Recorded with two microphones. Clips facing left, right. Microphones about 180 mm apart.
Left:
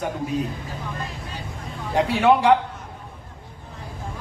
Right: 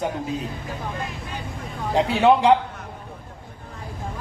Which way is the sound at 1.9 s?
20° right (ahead or behind).